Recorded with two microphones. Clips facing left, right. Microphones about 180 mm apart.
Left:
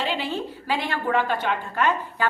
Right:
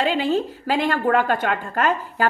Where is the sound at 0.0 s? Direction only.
45° right (ahead or behind).